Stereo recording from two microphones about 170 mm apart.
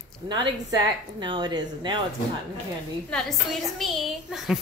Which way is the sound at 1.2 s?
25° right (ahead or behind).